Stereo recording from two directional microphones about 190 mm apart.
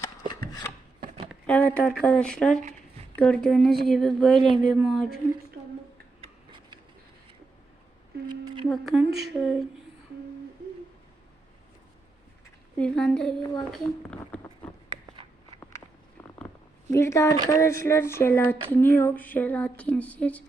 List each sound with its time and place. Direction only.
0.3 s chopping: 20° left (ahead or behind)
1.5 s a child's voice: 5° left (ahead or behind)
6.2 s a sound: 25° right (ahead or behind)
8.3 s a sound: 20° right (ahead or behind)
8.7 s a child's voice: centre (ahead or behind)
12.7 s a child's voice: 5° left (ahead or behind)
16.9 s speech: 15° left (ahead or behind)